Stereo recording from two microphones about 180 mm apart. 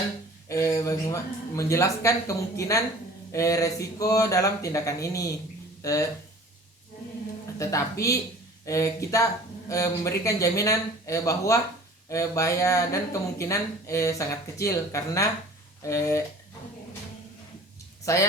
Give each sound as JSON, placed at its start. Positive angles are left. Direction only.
{"t": 0.4, "sound": "speech", "side_deg": 15}
{"t": 7.6, "sound": "speech", "side_deg": 15}
{"t": 18.0, "sound": "speech", "side_deg": 15}